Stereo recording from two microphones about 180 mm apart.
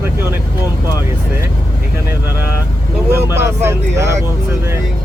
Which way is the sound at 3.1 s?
15° right (ahead or behind).